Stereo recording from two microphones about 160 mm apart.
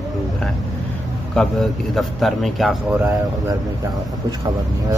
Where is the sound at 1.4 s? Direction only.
Centre (ahead or behind).